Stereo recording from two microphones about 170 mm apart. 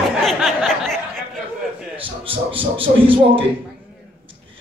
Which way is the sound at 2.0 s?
30° right (ahead or behind).